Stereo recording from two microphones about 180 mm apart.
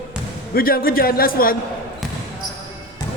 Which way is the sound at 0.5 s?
55° left (ahead or behind).